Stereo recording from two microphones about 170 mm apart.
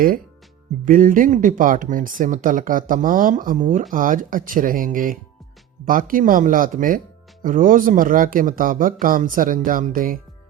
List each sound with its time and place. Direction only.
0.9 s speech: 50° right (ahead or behind)